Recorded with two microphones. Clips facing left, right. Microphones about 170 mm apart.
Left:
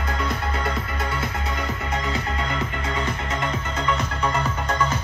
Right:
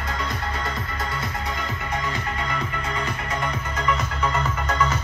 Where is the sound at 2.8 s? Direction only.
25° left (ahead or behind).